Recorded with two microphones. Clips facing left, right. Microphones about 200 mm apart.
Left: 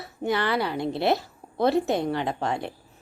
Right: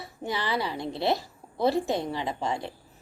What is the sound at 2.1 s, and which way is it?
Speech, 60° left (ahead or behind).